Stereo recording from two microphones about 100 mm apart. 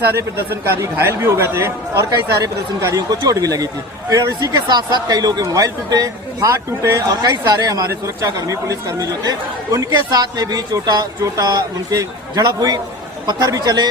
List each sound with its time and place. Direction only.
0.2 s a man's voice: 25° right (ahead or behind)
7.1 s a man's voice: 40° right (ahead or behind)